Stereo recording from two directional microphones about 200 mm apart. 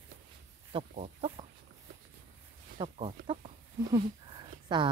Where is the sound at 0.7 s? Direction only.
30° right (ahead or behind).